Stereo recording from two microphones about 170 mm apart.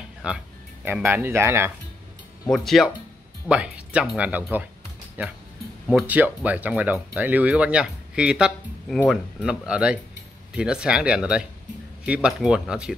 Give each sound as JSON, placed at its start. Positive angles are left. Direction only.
{"t": 0.2, "sound": "speech", "side_deg": -5}
{"t": 2.4, "sound": "speech", "side_deg": 0}